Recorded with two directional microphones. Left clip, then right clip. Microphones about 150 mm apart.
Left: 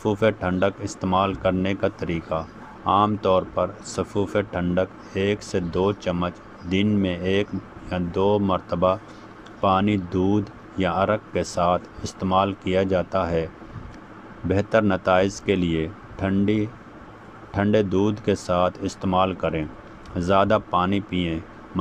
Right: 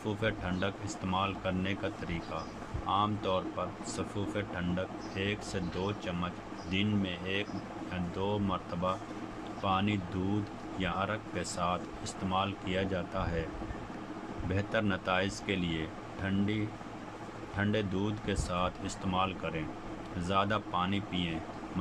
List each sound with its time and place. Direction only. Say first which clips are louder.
0.0 s speech: left 13 dB; 45° left (ahead or behind)
14.5 s speech: left 13 dB; 45° left (ahead or behind)